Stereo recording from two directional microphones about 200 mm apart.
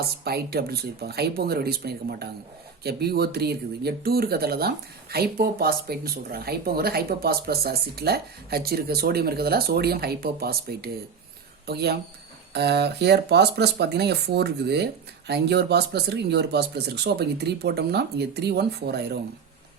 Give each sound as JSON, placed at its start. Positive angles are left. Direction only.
{"t": 0.3, "sound": "speech", "side_deg": -50}